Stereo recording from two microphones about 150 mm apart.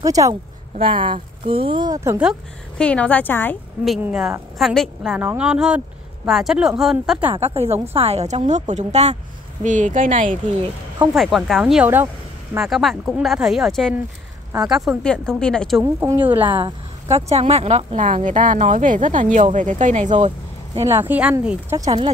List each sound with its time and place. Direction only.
0.0 s speech: 20° right (ahead or behind)
0.7 s speech: 35° right (ahead or behind)
2.8 s a woman's voice: 10° left (ahead or behind)
4.0 s speech: 5° right (ahead or behind)
5.1 s speech: 10° right (ahead or behind)
7.3 s a woman's voice: 40° right (ahead or behind); by 10.3 s 60° right (ahead or behind)
11.1 s speech: centre (ahead or behind)
12.5 s speech: centre (ahead or behind)
15.8 s speech: 15° right (ahead or behind)
16.4 s speech: 35° right (ahead or behind)
20.8 s speech: 15° right (ahead or behind)
21.7 s speech: 25° right (ahead or behind)